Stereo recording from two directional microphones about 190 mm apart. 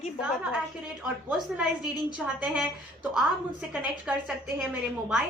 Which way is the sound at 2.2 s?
5° right (ahead or behind).